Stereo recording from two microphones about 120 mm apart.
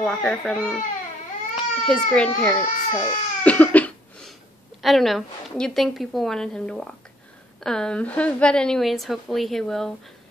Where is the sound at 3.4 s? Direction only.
15° left (ahead or behind).